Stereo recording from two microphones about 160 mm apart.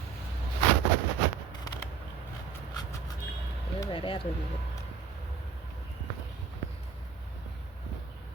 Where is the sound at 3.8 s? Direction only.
30° left (ahead or behind).